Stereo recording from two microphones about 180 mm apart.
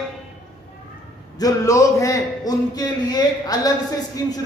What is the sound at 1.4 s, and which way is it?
A man's voice, 20° left (ahead or behind).